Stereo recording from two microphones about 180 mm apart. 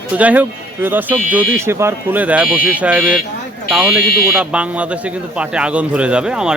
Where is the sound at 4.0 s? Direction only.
60° left (ahead or behind).